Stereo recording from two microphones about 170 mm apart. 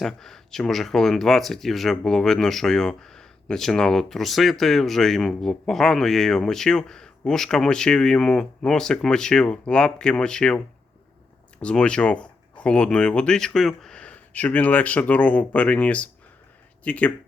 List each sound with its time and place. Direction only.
0.0 s speech: centre (ahead or behind)
11.6 s speech: 5° left (ahead or behind)